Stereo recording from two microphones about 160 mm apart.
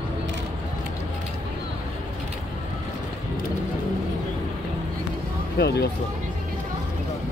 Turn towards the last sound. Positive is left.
turn(degrees=90)